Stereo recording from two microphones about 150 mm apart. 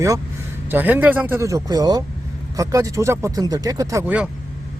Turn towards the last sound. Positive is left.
turn(degrees=-10)  # may be behind; listen again after turning